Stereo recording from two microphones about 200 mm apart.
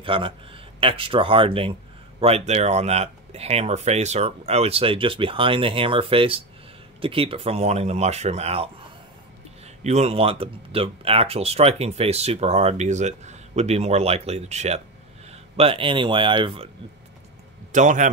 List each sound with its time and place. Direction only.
0.0 s speech: 25° right (ahead or behind)
9.8 s speech: 30° right (ahead or behind)
17.7 s speech: 40° right (ahead or behind)